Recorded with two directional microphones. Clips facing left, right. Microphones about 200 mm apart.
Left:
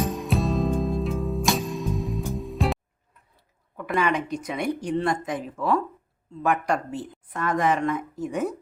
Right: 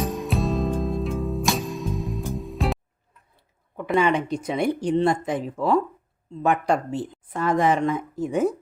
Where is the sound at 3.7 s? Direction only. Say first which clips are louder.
Right 3 dB; 20° right (ahead or behind).